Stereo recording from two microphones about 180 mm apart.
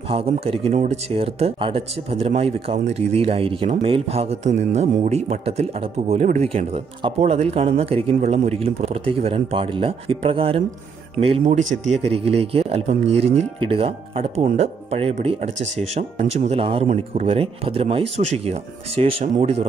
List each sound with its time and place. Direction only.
0.1 s speech: 30° right (ahead or behind)